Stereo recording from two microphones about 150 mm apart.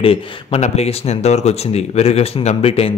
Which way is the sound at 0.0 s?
35° left (ahead or behind).